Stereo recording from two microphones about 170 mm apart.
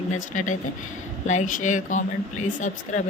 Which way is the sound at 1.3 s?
45° left (ahead or behind).